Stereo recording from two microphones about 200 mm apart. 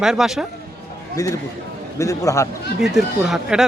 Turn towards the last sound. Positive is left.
turn(degrees=0)  # may be behind; listen again after turning